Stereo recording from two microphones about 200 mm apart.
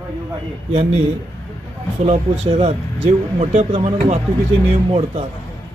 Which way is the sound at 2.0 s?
30° right (ahead or behind).